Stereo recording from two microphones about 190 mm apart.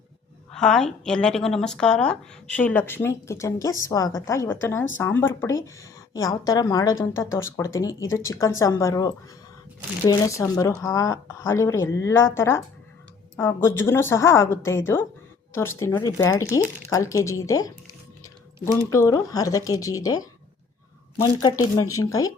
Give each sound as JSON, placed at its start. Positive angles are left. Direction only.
{"t": 0.5, "sound": "a woman's voice", "side_deg": 5}
{"t": 21.4, "sound": "speech", "side_deg": 20}